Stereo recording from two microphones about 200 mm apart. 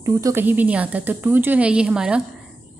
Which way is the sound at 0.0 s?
15° right (ahead or behind).